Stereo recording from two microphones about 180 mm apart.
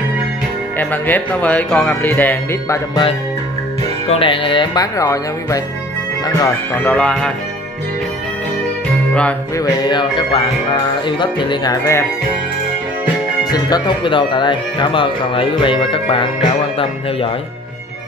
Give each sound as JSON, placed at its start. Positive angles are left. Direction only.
{"t": 0.7, "sound": "speech", "side_deg": 10}
{"t": 4.1, "sound": "speech", "side_deg": 30}
{"t": 9.6, "sound": "speech", "side_deg": 25}
{"t": 13.5, "sound": "speech", "side_deg": 20}